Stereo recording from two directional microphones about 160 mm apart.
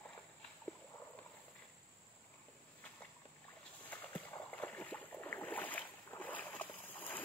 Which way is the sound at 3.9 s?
10° left (ahead or behind).